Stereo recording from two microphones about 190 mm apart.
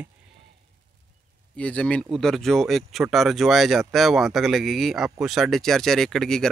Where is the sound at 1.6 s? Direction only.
5° left (ahead or behind).